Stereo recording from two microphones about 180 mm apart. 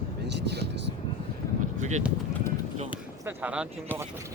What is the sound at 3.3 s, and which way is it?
Speech, 5° right (ahead or behind).